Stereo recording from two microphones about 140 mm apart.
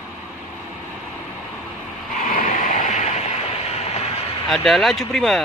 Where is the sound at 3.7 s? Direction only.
50° left (ahead or behind).